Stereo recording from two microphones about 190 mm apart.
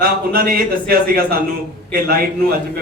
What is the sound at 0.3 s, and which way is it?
A man's voice, 50° right (ahead or behind).